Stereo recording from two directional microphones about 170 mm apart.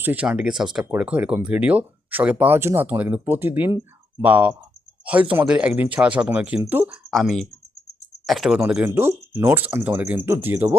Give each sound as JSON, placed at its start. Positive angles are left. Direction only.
{"t": 0.0, "sound": "speech", "side_deg": -10}
{"t": 7.1, "sound": "speech", "side_deg": 0}